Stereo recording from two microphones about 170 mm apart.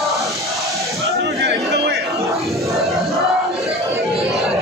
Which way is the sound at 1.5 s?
80° right.